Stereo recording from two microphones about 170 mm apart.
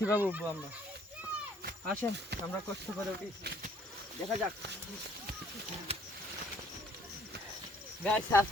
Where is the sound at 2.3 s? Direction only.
80° right.